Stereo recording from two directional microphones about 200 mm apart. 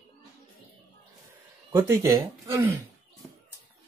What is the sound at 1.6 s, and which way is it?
Speech, 15° right (ahead or behind).